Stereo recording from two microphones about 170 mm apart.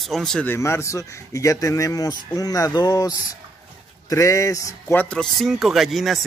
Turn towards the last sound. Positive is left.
turn(degrees=0)  # may be behind; listen again after turning